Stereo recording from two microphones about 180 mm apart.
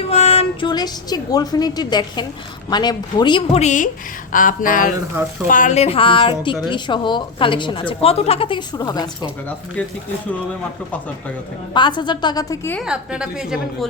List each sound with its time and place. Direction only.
0.1 s a woman's voice: 35° left (ahead or behind)
11.7 s a woman's voice: 25° left (ahead or behind)
12.8 s a woman's voice: 5° right (ahead or behind)